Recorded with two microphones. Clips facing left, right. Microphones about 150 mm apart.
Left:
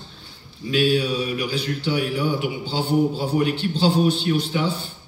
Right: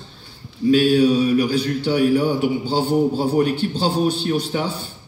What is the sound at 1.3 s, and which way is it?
A man's voice, 45° right (ahead or behind).